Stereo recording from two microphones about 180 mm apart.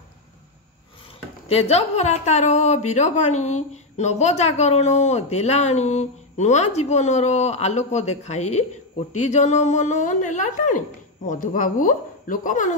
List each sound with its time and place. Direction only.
1.5 s a woman's voice: 35° left (ahead or behind)